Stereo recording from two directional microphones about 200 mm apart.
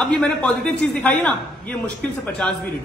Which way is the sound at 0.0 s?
5° left (ahead or behind).